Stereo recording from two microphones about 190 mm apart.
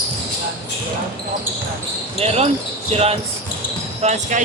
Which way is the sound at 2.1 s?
35° right (ahead or behind).